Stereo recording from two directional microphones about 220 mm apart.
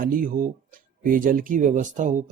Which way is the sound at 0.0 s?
40° right (ahead or behind).